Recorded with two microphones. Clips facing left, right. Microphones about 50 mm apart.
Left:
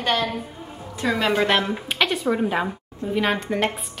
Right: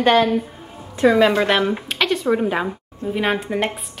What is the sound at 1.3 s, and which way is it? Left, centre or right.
Speech, centre.